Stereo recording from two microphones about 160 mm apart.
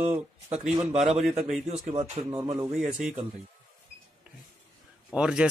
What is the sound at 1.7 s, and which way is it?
Speech, 40° right (ahead or behind).